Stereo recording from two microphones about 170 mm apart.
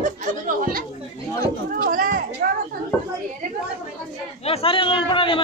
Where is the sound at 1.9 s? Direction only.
55° right (ahead or behind).